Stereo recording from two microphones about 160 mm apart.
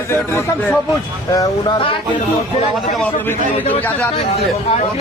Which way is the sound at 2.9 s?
10° left (ahead or behind).